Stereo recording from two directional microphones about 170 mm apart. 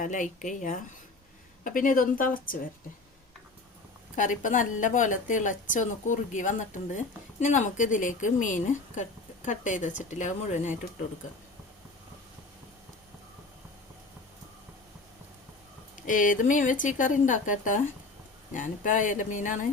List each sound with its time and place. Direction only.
0.0 s a woman's voice: 50° left (ahead or behind)
4.1 s a woman's voice: 50° left (ahead or behind)
16.0 s a woman's voice: 50° left (ahead or behind)